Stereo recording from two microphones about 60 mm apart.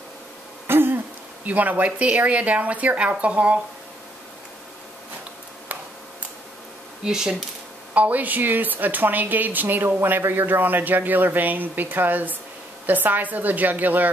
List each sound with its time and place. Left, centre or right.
0.7 s speech: right
7.1 s speech: centre
7.9 s a woman's voice: right